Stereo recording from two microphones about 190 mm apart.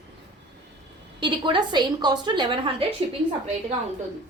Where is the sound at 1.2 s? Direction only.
25° right (ahead or behind).